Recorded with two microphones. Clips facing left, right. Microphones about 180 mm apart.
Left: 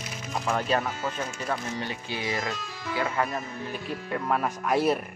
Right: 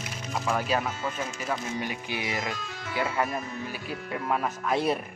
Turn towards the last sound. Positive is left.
turn(degrees=5)  # may be behind; listen again after turning